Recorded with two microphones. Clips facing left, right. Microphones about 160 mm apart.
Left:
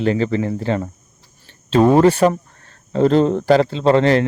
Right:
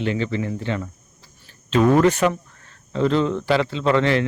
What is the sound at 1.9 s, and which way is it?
Speech, 30° left (ahead or behind).